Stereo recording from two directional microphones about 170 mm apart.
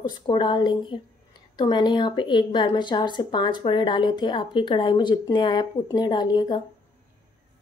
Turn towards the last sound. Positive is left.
turn(degrees=25)  # may be behind; listen again after turning